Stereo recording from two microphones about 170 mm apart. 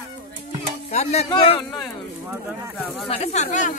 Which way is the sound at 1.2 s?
30° left (ahead or behind).